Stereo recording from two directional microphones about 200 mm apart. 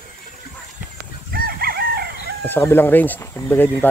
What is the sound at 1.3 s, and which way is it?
Chicken, 50° right (ahead or behind).